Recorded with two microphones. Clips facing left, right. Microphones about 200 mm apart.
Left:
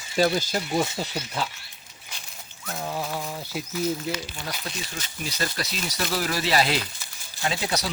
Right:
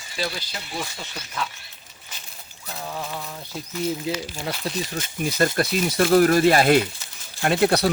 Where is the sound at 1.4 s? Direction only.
30° left (ahead or behind).